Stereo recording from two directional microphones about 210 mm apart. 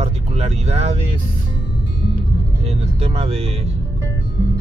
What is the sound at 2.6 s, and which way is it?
Speech, 30° right (ahead or behind).